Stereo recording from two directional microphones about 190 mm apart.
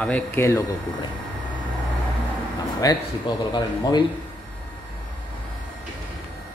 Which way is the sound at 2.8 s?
20° left (ahead or behind).